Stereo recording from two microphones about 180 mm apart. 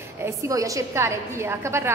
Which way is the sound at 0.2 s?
20° right (ahead or behind).